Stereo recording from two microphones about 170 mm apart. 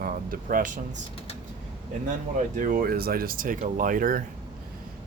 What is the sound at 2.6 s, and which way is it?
Speech, 55° right (ahead or behind).